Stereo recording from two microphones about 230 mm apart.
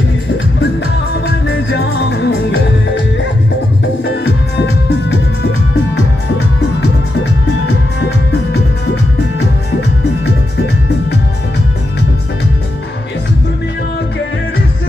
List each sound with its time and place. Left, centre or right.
1.2 s music: left
4.1 s music: left